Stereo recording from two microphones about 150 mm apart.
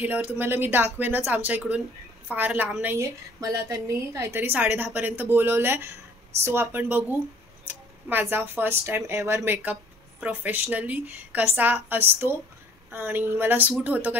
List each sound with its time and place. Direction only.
0.0 s a woman's voice: 10° right (ahead or behind)